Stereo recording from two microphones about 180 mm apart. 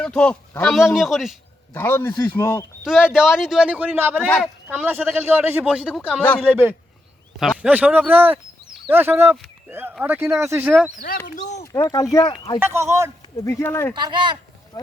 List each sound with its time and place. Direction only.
0.0 s a man's voice: 5° left (ahead or behind)
1.7 s speech: 15° left (ahead or behind)
2.8 s speech: 5° right (ahead or behind)
5.9 s speech: 5° left (ahead or behind)
6.5 s speech: 10° right (ahead or behind)
7.3 s speech: centre (ahead or behind)
11.6 s speech: 20° left (ahead or behind)
12.5 s speech: 15° right (ahead or behind)
13.3 s speech: 15° left (ahead or behind)
13.9 s speech: 25° right (ahead or behind)